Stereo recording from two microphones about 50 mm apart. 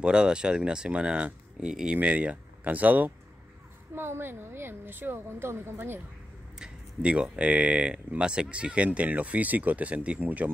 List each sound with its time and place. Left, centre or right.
0.0 s speech: centre; by 3.1 s right
3.9 s speech: right
6.6 s a sound: right
7.2 s speech: right